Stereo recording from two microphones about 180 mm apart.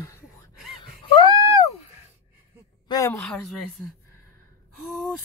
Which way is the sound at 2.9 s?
20° left (ahead or behind).